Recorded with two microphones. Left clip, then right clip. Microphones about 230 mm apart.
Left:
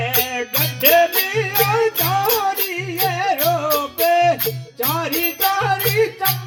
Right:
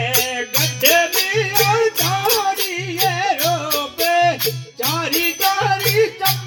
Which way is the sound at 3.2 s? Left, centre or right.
Right.